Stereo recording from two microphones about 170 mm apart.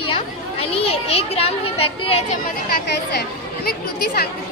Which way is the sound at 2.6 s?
75° left (ahead or behind).